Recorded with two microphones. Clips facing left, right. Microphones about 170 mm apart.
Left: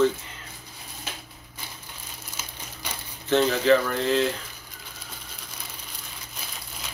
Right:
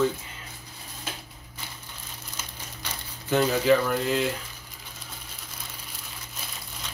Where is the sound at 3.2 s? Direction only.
10° right (ahead or behind).